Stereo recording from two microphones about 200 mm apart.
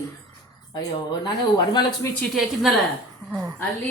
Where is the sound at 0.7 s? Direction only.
20° left (ahead or behind).